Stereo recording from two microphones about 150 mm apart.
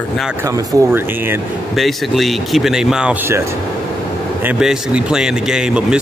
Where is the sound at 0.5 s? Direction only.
15° right (ahead or behind).